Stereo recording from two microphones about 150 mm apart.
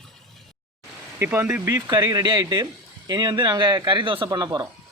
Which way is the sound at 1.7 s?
30° right (ahead or behind).